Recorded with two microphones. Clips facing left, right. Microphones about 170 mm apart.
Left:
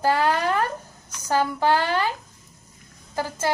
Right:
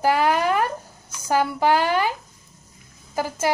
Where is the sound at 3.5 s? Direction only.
15° right (ahead or behind).